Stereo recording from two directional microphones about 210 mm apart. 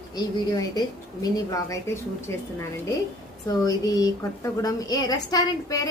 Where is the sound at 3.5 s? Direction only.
20° left (ahead or behind).